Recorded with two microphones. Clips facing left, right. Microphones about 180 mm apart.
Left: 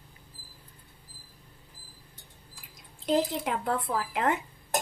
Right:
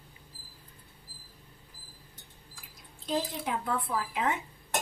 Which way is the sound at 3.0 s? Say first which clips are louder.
Left 5 dB; 70° left (ahead or behind).